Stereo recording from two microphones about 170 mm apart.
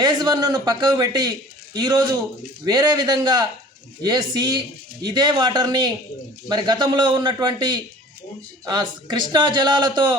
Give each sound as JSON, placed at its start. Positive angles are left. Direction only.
{"t": 0.0, "sound": "a man's voice", "side_deg": -25}